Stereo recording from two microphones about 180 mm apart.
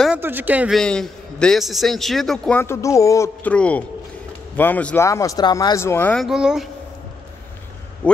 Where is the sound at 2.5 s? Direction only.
15° left (ahead or behind); by 6.6 s 5° right (ahead or behind).